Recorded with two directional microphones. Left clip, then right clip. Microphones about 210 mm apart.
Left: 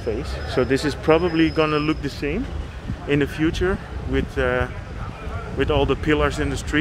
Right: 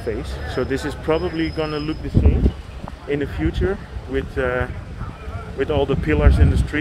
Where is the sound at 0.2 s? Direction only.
20° left (ahead or behind).